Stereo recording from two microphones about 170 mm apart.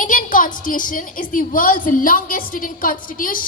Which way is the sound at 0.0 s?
50° left (ahead or behind).